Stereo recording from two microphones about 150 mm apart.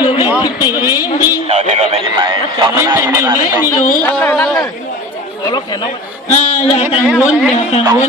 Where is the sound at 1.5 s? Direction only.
50° right (ahead or behind).